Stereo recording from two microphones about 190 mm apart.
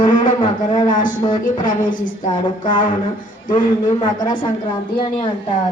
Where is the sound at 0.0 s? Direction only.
25° left (ahead or behind).